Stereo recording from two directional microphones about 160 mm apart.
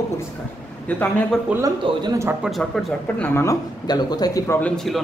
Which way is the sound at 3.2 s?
15° left (ahead or behind).